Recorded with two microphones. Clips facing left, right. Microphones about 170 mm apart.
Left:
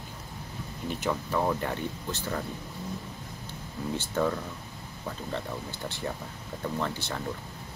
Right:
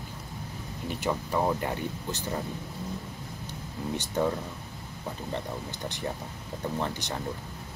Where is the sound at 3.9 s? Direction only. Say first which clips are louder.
Even; 15° right (ahead or behind).